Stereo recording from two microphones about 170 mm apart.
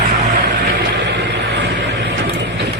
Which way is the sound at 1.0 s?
90° right.